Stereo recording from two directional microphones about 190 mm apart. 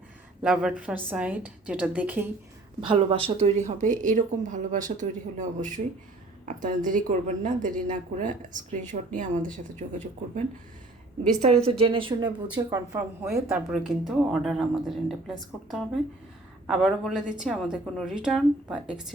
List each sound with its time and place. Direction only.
0.4 s a woman's voice: 5° right (ahead or behind)
2.8 s a woman's voice: 25° right (ahead or behind); by 9.0 s 45° right (ahead or behind)
11.2 s a woman's voice: 35° right (ahead or behind); by 13.1 s 15° right (ahead or behind)
13.2 s a woman's voice: centre (ahead or behind)